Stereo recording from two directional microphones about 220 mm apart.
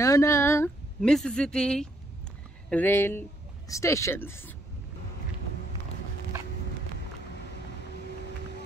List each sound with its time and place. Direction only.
0.0 s speech: 15° left (ahead or behind)